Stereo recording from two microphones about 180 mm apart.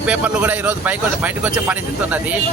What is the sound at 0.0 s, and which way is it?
Speech, 5° right (ahead or behind).